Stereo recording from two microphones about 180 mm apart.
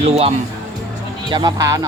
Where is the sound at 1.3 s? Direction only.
25° right (ahead or behind).